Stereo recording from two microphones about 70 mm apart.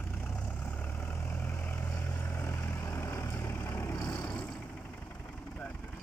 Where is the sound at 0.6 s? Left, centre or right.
Left.